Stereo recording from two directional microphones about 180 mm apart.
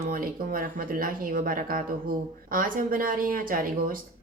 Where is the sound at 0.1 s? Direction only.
50° right (ahead or behind).